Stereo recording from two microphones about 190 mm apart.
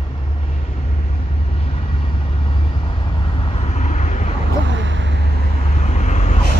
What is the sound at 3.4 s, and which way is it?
Vehicle, 30° left (ahead or behind).